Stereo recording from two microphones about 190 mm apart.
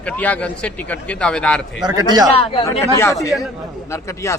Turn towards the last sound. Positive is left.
turn(degrees=15)  # may be behind; listen again after turning